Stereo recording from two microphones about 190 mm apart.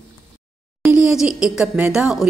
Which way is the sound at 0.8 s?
5° right (ahead or behind).